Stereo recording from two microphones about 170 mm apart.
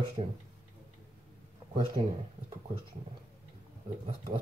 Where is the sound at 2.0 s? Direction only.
35° right (ahead or behind).